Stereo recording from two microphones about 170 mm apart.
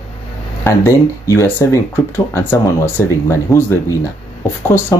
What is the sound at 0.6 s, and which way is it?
Speech, 15° left (ahead or behind).